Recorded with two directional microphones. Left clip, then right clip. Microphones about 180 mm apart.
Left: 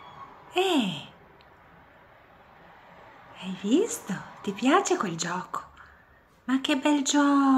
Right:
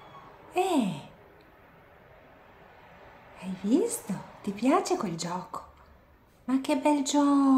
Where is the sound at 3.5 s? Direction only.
10° right (ahead or behind).